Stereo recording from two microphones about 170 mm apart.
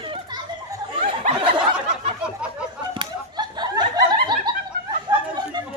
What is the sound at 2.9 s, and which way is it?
Snicker, 25° right (ahead or behind).